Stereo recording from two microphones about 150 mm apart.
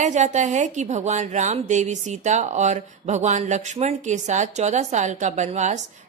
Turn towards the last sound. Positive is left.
turn(degrees=-50)  # may be behind; listen again after turning